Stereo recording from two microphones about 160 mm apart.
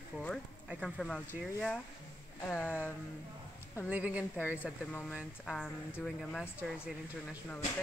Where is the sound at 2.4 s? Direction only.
10° left (ahead or behind).